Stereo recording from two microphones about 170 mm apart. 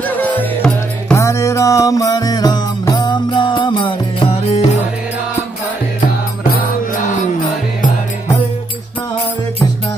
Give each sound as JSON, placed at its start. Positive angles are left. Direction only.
{"t": 0.1, "sound": "music", "side_deg": 10}